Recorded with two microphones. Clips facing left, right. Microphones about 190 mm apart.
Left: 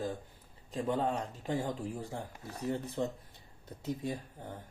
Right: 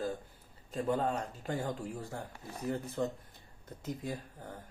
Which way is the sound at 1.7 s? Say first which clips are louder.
Left 1 dB; centre (ahead or behind).